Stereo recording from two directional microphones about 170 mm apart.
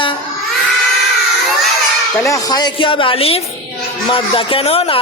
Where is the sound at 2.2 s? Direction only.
20° left (ahead or behind).